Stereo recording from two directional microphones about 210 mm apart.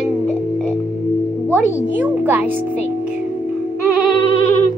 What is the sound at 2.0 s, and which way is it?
Speech, 10° right (ahead or behind).